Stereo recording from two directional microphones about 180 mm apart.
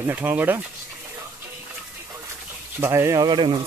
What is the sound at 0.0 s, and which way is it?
Speech, 10° right (ahead or behind).